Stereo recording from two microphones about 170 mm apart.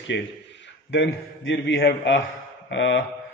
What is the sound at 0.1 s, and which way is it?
A man's voice, 90° left.